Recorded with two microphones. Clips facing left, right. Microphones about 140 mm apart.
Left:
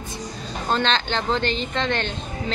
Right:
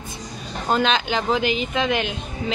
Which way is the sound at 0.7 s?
10° right (ahead or behind).